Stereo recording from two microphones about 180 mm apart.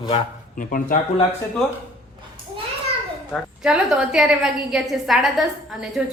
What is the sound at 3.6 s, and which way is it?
A woman's voice, 5° right (ahead or behind).